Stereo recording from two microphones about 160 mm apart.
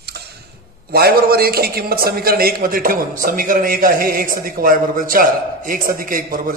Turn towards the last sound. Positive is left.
turn(degrees=-60)  # may be behind; listen again after turning